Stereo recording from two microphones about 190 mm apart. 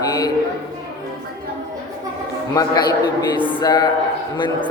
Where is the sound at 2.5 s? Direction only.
20° left (ahead or behind).